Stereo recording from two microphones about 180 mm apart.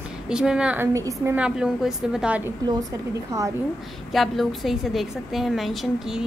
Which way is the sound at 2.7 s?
20° right (ahead or behind).